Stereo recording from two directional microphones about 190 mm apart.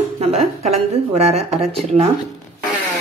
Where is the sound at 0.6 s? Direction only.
35° right (ahead or behind).